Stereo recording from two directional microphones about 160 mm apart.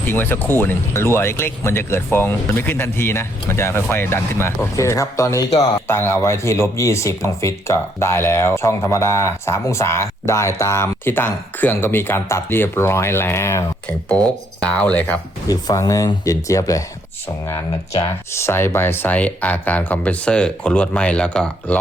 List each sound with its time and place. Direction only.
0.0 s speech: 15° left (ahead or behind)
15.4 s speech: 20° left (ahead or behind); by 21.8 s 5° left (ahead or behind)